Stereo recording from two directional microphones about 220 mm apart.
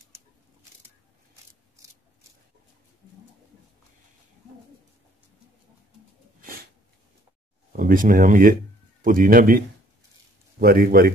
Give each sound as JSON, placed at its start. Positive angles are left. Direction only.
{"t": 7.7, "sound": "speech", "side_deg": -40}
{"t": 10.6, "sound": "a man's voice", "side_deg": -45}